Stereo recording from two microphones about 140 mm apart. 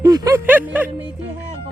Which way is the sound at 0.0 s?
25° right (ahead or behind).